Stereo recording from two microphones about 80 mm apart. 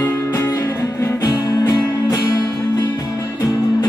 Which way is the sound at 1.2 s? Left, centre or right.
Left.